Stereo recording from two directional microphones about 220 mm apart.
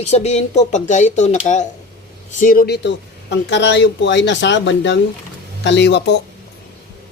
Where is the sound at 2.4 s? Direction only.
40° left (ahead or behind).